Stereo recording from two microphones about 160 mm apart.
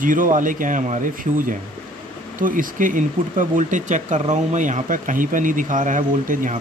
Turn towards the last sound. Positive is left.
turn(degrees=-55)  # may be behind; listen again after turning